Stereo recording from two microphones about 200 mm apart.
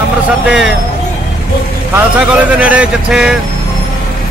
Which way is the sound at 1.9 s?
5° right (ahead or behind).